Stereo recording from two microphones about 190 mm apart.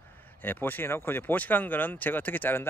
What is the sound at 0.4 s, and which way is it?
Speech, 10° left (ahead or behind).